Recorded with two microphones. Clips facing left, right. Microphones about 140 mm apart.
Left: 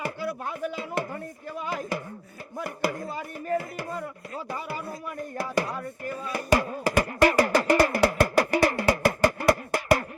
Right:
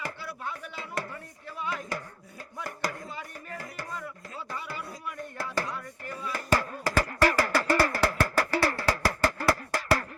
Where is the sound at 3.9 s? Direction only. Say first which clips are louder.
Left 5 dB; 45° left (ahead or behind).